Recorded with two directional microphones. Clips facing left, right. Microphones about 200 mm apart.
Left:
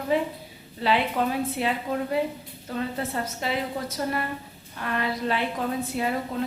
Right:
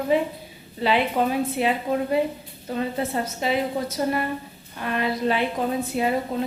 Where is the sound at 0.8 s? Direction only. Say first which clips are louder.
Right 3 dB; 20° right (ahead or behind).